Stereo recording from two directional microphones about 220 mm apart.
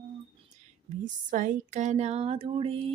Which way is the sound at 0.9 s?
35° right (ahead or behind).